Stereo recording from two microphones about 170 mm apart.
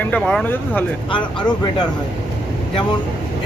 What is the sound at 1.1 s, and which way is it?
Speech, 25° left (ahead or behind).